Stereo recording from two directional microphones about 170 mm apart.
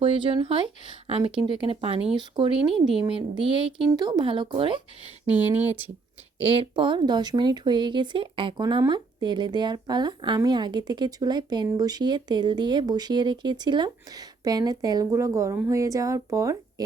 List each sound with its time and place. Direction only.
0.0 s speech: 30° right (ahead or behind)
5.3 s speech: 10° right (ahead or behind)
6.4 s speech: 35° right (ahead or behind)